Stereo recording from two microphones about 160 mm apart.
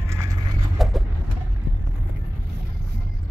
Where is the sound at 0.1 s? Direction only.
20° right (ahead or behind).